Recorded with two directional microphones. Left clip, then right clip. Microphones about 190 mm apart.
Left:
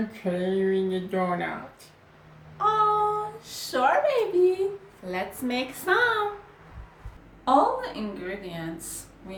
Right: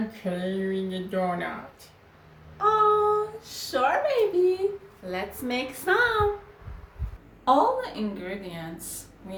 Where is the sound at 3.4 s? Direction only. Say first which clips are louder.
Left 1 dB; centre (ahead or behind).